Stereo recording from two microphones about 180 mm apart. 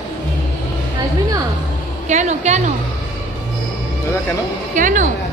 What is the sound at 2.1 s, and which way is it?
Speech, 40° right (ahead or behind).